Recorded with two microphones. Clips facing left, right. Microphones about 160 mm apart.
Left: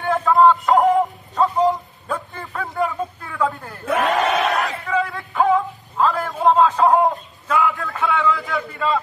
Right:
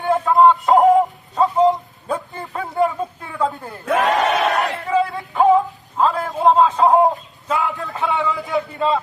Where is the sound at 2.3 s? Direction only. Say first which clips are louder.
Right 1 dB; 15° right (ahead or behind).